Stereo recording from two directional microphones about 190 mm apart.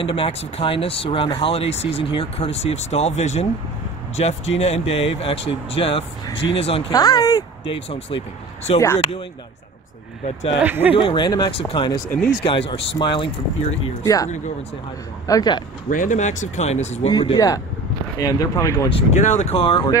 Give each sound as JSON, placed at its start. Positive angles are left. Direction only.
{"t": 0.0, "sound": "speech", "side_deg": 30}
{"t": 6.9, "sound": "speech", "side_deg": 20}
{"t": 8.7, "sound": "speech", "side_deg": 15}
{"t": 10.6, "sound": "speech", "side_deg": -10}
{"t": 11.0, "sound": "speech", "side_deg": 25}
{"t": 15.9, "sound": "speech", "side_deg": 45}
{"t": 17.1, "sound": "speech", "side_deg": 25}
{"t": 18.9, "sound": "speech", "side_deg": 35}